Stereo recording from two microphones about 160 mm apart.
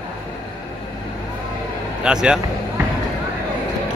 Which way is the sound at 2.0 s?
5° right (ahead or behind).